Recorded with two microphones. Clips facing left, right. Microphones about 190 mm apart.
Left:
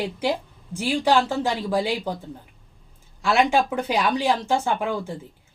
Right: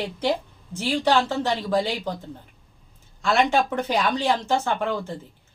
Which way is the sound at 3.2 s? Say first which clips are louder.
Left 1 dB; 10° left (ahead or behind).